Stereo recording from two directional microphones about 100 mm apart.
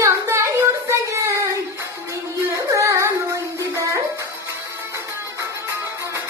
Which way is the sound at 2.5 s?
30° right (ahead or behind).